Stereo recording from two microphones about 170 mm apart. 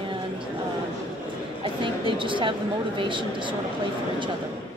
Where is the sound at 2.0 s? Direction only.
30° right (ahead or behind).